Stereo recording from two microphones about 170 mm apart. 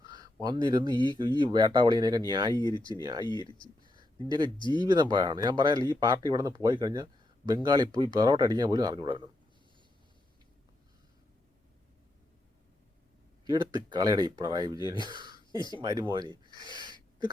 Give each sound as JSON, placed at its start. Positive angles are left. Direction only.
{"t": 0.4, "sound": "speech", "side_deg": -25}
{"t": 2.6, "sound": "speech", "side_deg": 25}
{"t": 3.0, "sound": "speech", "side_deg": -25}
{"t": 3.2, "sound": "speech", "side_deg": 25}
{"t": 3.8, "sound": "a sound", "side_deg": -25}
{"t": 4.5, "sound": "speech", "side_deg": 25}
{"t": 4.8, "sound": "speech", "side_deg": -25}
{"t": 13.4, "sound": "speech", "side_deg": -25}
{"t": 15.5, "sound": "speech", "side_deg": 25}
{"t": 15.8, "sound": "speech", "side_deg": -20}
{"t": 16.5, "sound": "a sound", "side_deg": -25}